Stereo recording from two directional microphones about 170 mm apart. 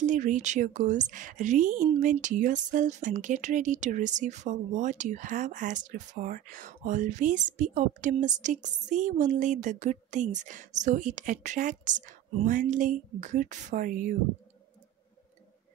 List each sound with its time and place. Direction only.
0.0 s speech: 50° right (ahead or behind)